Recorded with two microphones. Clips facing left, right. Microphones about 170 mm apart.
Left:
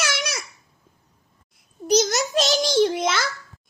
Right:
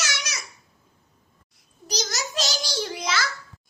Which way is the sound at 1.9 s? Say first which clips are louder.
Left 12 dB; 55° left (ahead or behind).